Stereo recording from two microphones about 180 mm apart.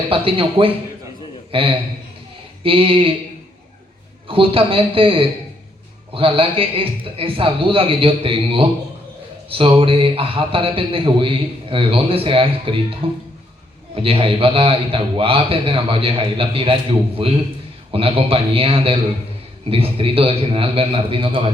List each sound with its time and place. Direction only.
0.1 s a man's voice: 30° right (ahead or behind)
4.3 s a man's voice: 30° right (ahead or behind)